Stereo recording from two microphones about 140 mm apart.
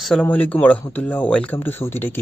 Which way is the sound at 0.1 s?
10° left (ahead or behind).